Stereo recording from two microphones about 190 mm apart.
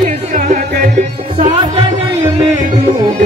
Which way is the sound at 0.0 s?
35° right (ahead or behind).